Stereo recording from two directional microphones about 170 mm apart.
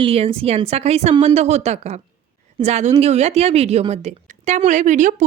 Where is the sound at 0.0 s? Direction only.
35° right (ahead or behind).